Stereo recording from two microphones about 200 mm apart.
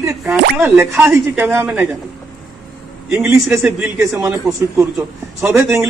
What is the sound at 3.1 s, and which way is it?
A man's voice, 5° right (ahead or behind).